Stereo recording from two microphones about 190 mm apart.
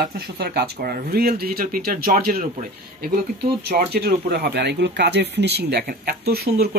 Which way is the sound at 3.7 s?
55° right (ahead or behind).